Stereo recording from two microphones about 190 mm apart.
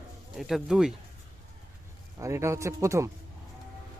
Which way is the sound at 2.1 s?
15° right (ahead or behind).